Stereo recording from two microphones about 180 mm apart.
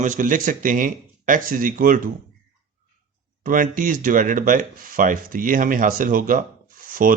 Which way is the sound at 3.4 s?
50° right (ahead or behind).